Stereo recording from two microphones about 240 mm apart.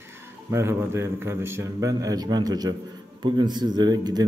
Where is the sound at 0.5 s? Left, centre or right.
Centre.